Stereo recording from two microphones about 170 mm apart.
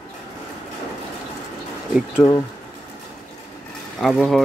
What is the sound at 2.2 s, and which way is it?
Speech, 15° left (ahead or behind).